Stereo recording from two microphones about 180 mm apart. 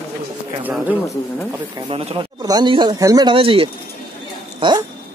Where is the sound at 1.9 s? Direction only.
30° right (ahead or behind).